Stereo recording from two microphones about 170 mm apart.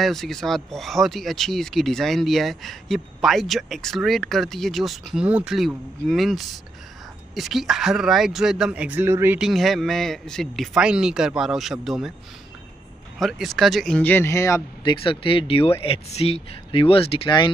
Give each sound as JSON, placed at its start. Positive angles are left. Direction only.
{"t": 0.0, "sound": "speech", "side_deg": 0}
{"t": 9.4, "sound": "speech", "side_deg": 0}
{"t": 13.2, "sound": "speech", "side_deg": 0}